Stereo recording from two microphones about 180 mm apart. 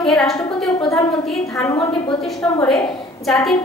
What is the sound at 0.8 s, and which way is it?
A woman's voice, 15° left (ahead or behind).